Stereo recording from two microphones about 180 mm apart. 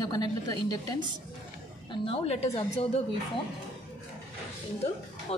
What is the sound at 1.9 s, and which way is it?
Speech, 30° left (ahead or behind).